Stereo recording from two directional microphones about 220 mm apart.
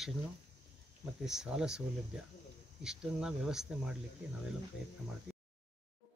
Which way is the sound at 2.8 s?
Centre (ahead or behind).